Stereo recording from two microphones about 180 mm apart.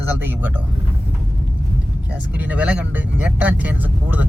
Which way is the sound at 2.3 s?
10° right (ahead or behind).